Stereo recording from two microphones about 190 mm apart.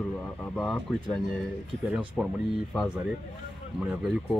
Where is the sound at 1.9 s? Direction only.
5° right (ahead or behind).